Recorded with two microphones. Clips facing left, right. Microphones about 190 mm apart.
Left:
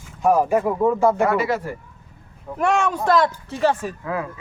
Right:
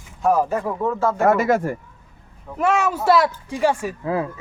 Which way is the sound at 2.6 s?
5° right (ahead or behind).